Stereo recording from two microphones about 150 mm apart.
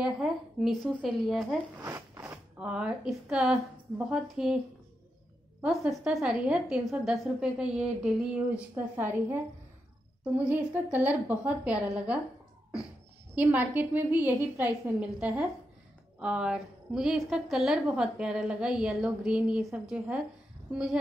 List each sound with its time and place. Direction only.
0.0 s a woman's voice: centre (ahead or behind)
1.8 s zipper: 20° right (ahead or behind)
2.6 s a woman's voice: 5° right (ahead or behind)
5.6 s a woman's voice: centre (ahead or behind)
13.3 s a woman's voice: 10° right (ahead or behind)